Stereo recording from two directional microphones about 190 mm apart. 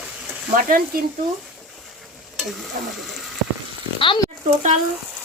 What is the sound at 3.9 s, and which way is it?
Speech, 25° left (ahead or behind).